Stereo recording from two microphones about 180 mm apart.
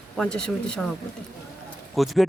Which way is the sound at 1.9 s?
Centre (ahead or behind).